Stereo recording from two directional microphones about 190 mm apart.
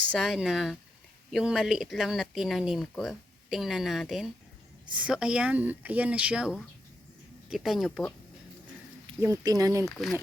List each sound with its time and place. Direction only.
0.1 s speech: centre (ahead or behind)
9.2 s speech: 15° right (ahead or behind)
9.8 s speech: centre (ahead or behind)